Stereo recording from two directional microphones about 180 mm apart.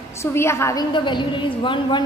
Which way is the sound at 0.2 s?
15° left (ahead or behind).